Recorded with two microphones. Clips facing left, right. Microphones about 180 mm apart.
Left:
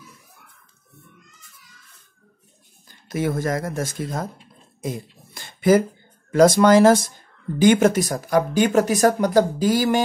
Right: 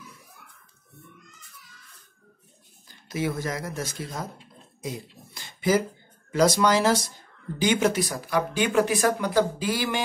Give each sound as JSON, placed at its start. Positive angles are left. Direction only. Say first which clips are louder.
{"t": 3.1, "sound": "speech", "louder": "left 5 dB", "side_deg": 50}